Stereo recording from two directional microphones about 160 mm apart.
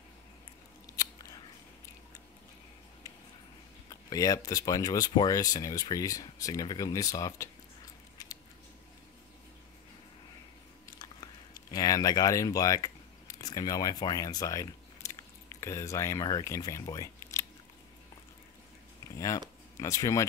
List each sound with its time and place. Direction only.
0.9 s scissors: 25° left (ahead or behind)
3.9 s speech: 20° left (ahead or behind)
8.2 s scissors: 20° left (ahead or behind)
11.7 s speech: 20° left (ahead or behind)
19.1 s speech: 20° left (ahead or behind)